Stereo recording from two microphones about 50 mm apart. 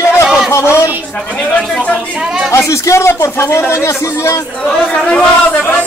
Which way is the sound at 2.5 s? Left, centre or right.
Left.